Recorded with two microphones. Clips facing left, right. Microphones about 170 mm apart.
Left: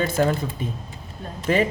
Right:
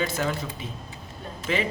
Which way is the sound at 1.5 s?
45° left (ahead or behind).